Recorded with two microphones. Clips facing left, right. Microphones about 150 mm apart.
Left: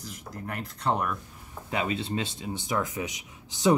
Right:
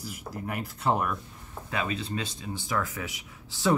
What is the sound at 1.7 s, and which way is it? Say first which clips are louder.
Speech: left 2 dB; 20° left (ahead or behind).